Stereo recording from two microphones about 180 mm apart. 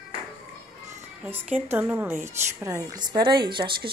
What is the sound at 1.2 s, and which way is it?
A woman's voice, 10° right (ahead or behind).